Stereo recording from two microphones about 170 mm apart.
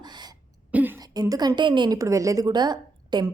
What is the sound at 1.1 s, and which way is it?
A woman's voice, 20° right (ahead or behind).